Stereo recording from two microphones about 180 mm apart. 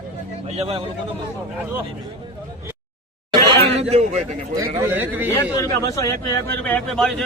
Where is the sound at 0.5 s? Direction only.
35° right (ahead or behind).